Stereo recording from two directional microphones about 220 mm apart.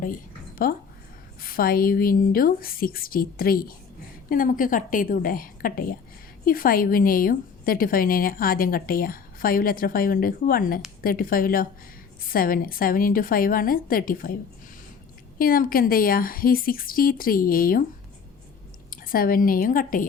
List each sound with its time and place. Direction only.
0.6 s a woman's voice: 40° left (ahead or behind)
15.4 s a woman's voice: 40° left (ahead or behind)
18.9 s a woman's voice: 40° left (ahead or behind)